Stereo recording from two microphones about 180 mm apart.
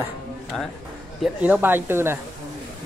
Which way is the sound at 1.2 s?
10° right (ahead or behind).